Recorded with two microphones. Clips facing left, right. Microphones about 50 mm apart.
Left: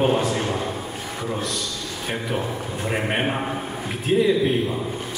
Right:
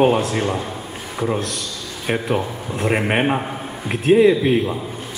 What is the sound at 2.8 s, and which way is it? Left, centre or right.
Speech, right.